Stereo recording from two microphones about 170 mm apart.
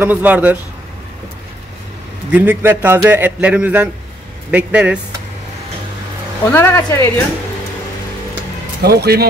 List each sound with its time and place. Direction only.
0.0 s a man's voice: 10° right (ahead or behind)
2.3 s a man's voice: 10° right (ahead or behind)
6.5 s speech: 15° left (ahead or behind)
8.8 s speech: 70° right (ahead or behind)